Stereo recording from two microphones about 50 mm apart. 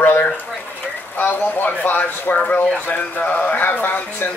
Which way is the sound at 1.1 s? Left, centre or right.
Left.